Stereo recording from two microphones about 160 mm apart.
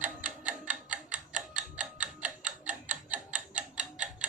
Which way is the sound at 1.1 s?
55° right (ahead or behind).